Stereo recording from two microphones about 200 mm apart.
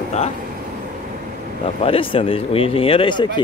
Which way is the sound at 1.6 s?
30° left (ahead or behind).